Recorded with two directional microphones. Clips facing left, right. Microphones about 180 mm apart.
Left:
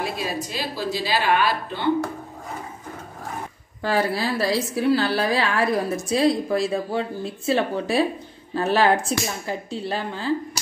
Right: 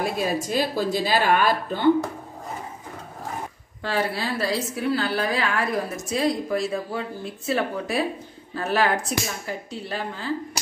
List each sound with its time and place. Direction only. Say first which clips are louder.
0.0 s a woman's voice: right 3 dB; 50° right (ahead or behind)
3.8 s a woman's voice: left 3 dB; 40° left (ahead or behind)